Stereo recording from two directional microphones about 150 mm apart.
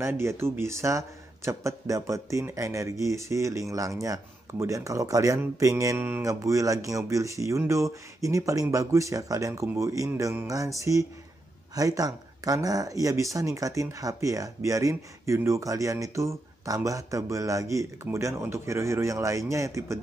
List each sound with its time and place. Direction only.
0.0 s speech: 15° right (ahead or behind)